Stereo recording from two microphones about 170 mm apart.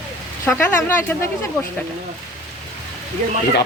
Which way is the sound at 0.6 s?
15° left (ahead or behind).